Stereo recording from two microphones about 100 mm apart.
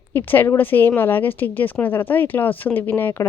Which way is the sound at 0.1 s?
20° left (ahead or behind).